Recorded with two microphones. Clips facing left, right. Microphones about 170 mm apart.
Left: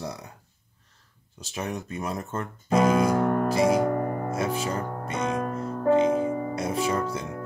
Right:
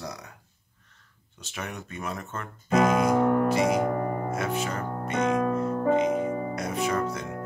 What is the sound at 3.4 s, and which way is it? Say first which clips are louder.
Speech: left 2 dB; 35° left (ahead or behind).